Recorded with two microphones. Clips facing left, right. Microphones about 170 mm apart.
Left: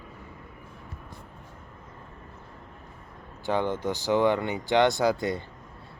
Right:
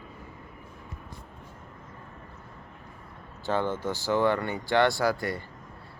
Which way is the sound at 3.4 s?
15° left (ahead or behind).